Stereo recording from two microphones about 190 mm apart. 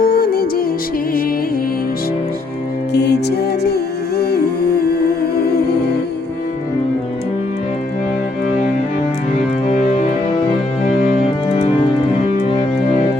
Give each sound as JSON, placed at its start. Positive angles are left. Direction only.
{"t": 0.0, "sound": "music", "side_deg": 50}
{"t": 2.9, "sound": "music", "side_deg": 60}
{"t": 9.6, "sound": "music", "side_deg": 40}